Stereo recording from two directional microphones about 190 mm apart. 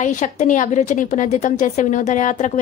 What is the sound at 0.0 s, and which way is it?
A woman's voice, 40° left (ahead or behind).